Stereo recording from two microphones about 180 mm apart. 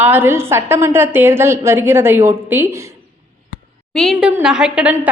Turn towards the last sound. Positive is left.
turn(degrees=-5)  # may be behind; listen again after turning